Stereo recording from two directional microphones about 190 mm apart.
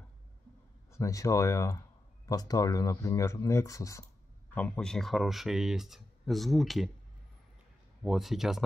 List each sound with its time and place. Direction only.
0.9 s speech: 15° left (ahead or behind)
4.6 s speech: 5° left (ahead or behind)
8.0 s speech: centre (ahead or behind)